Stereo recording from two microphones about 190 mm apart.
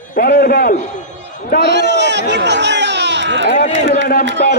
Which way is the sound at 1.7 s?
65° right (ahead or behind).